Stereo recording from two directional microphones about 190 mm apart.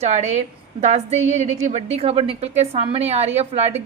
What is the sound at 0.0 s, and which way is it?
A woman's voice, 35° right (ahead or behind).